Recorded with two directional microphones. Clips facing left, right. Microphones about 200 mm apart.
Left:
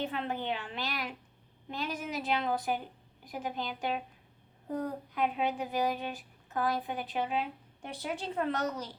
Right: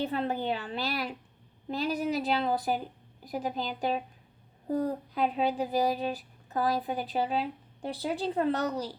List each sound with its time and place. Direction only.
0.0 s speech: 35° right (ahead or behind)